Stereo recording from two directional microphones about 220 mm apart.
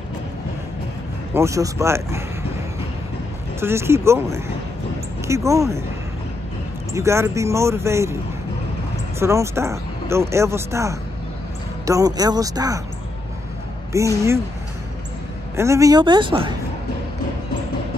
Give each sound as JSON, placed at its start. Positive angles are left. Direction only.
{"t": 1.3, "sound": "speech", "side_deg": -15}
{"t": 3.6, "sound": "speech", "side_deg": -10}
{"t": 6.9, "sound": "speech", "side_deg": -10}
{"t": 9.2, "sound": "speech", "side_deg": -10}
{"t": 13.9, "sound": "speech", "side_deg": -15}
{"t": 15.5, "sound": "speech", "side_deg": -15}